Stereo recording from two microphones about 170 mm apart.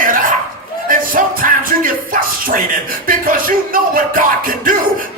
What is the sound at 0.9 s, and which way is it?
Music, 55° right (ahead or behind).